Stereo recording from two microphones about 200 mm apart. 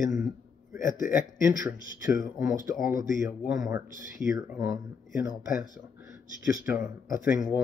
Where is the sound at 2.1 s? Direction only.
40° left (ahead or behind).